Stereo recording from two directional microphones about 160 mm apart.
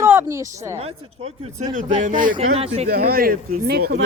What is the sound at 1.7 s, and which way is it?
Speech, 55° right (ahead or behind).